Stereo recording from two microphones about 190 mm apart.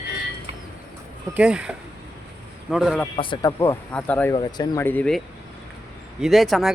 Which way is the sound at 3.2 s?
25° left (ahead or behind).